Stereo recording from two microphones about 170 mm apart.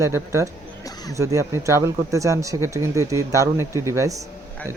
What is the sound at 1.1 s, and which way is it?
Speech, 20° right (ahead or behind).